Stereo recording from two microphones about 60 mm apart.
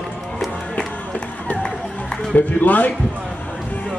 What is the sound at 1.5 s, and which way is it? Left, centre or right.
Music, left.